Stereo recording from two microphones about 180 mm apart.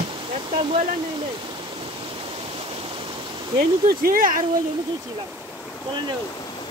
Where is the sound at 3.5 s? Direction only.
55° right (ahead or behind).